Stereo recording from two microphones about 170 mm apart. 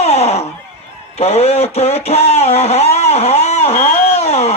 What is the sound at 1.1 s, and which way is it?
Radio, 35° left (ahead or behind).